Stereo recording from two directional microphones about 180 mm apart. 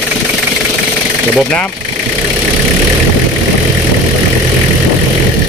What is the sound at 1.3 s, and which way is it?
Speech, 5° left (ahead or behind).